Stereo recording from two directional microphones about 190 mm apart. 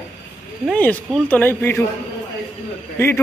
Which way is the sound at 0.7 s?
10° left (ahead or behind).